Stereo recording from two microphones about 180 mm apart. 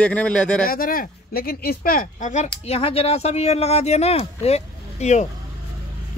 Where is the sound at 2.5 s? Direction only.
35° left (ahead or behind).